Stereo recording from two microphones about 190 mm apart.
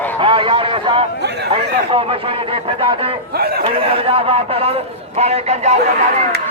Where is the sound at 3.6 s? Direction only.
30° right (ahead or behind).